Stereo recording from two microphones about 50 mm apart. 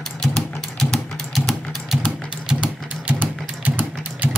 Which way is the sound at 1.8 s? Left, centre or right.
Centre.